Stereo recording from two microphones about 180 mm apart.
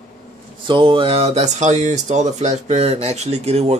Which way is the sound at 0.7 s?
25° right (ahead or behind).